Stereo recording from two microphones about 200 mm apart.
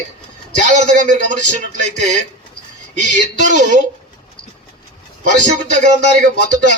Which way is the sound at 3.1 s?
40° right (ahead or behind).